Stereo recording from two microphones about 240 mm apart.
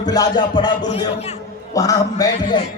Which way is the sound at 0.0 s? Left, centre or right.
Centre.